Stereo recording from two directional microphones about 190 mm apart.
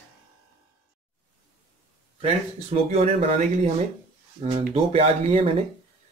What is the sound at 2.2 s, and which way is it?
Speech, 35° right (ahead or behind).